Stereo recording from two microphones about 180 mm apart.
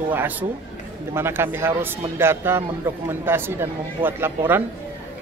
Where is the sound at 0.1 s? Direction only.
10° right (ahead or behind).